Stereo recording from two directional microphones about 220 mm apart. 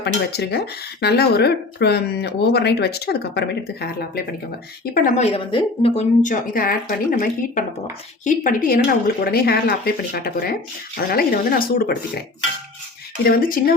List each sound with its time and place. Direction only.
0.0 s speech: 45° left (ahead or behind)
4.9 s a woman's voice: 35° left (ahead or behind)
6.2 s speech: 40° left (ahead or behind)
13.2 s speech: 40° left (ahead or behind)